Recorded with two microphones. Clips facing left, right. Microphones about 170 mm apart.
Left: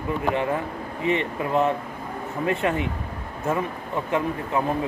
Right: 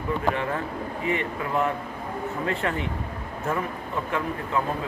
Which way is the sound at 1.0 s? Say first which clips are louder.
Left 4 dB; 20° left (ahead or behind).